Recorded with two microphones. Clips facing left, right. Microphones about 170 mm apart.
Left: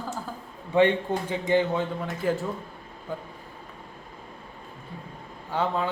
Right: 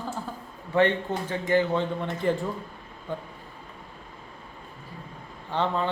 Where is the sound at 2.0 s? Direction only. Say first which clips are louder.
Right 1 dB; 5° left (ahead or behind).